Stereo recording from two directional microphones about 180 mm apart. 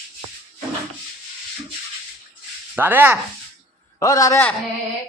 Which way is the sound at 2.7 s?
10° right (ahead or behind).